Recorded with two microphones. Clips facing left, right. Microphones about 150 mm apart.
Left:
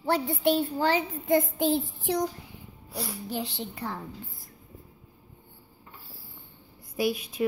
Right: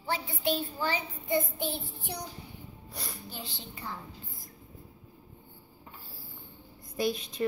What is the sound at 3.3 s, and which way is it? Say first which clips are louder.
Speech: left 10 dB; 75° left (ahead or behind).